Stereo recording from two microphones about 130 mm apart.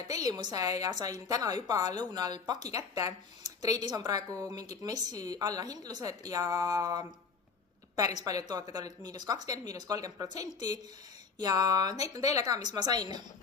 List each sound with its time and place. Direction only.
0.1 s speech: 30° right (ahead or behind)
8.2 s speech: 30° right (ahead or behind)